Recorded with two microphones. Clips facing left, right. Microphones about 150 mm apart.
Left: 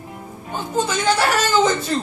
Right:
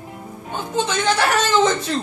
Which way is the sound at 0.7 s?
5° left (ahead or behind).